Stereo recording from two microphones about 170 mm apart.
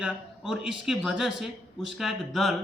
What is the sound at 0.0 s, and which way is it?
A man's voice, 5° right (ahead or behind).